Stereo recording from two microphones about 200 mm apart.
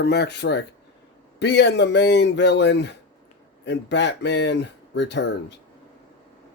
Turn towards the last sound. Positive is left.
turn(degrees=60)  # may be behind; listen again after turning